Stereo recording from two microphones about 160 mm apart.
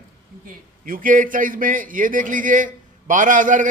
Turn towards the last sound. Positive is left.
turn(degrees=-55)  # may be behind; listen again after turning